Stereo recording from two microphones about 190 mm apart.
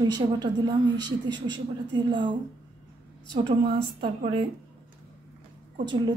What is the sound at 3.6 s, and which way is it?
Speech, 25° right (ahead or behind).